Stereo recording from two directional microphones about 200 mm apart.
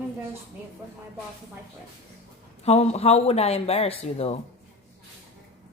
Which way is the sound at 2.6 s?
30° left (ahead or behind).